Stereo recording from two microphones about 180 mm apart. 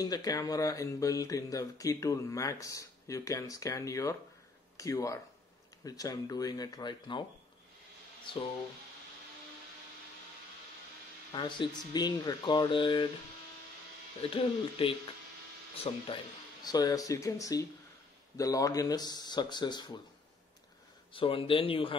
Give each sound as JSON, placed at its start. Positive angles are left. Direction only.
{"t": 0.0, "sound": "speech", "side_deg": 20}
{"t": 11.3, "sound": "speech", "side_deg": 25}
{"t": 14.2, "sound": "speech", "side_deg": 30}
{"t": 16.6, "sound": "speech", "side_deg": 20}
{"t": 21.1, "sound": "speech", "side_deg": 30}